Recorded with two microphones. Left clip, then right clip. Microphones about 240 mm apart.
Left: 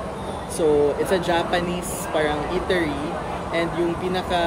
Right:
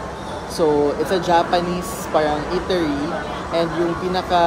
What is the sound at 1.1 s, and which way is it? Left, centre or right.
Speech, centre.